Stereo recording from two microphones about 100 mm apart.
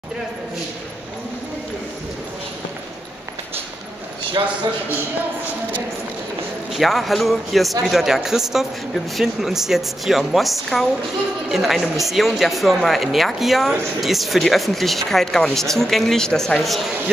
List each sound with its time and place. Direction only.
4.4 s speech: 50° right (ahead or behind)
6.7 s speech: centre (ahead or behind)